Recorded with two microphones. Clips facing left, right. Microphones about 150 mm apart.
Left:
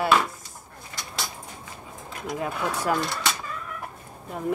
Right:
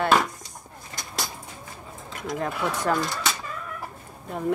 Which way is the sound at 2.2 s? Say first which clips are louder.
Right 1 dB; 10° left (ahead or behind).